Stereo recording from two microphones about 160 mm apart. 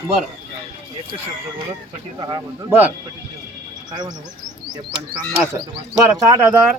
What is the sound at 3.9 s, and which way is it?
Speech, 25° right (ahead or behind).